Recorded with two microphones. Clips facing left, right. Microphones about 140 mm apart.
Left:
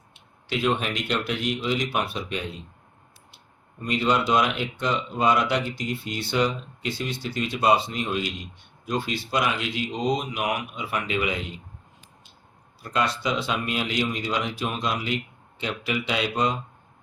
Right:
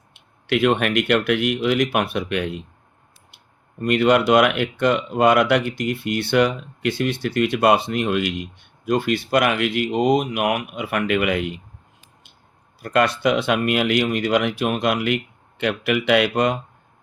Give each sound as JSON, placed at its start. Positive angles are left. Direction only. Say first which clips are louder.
{"t": 0.1, "sound": "speech", "louder": "right 8 dB", "side_deg": -65}
{"t": 12.8, "sound": "speech", "louder": "right 7 dB", "side_deg": -65}